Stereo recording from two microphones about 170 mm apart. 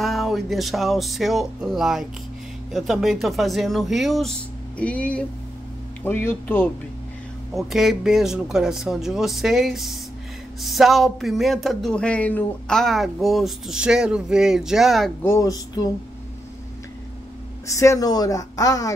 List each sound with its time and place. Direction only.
0.0 s speech: centre (ahead or behind)
7.5 s speech: centre (ahead or behind)
15.2 s speech: 20° left (ahead or behind)
17.6 s speech: 20° left (ahead or behind)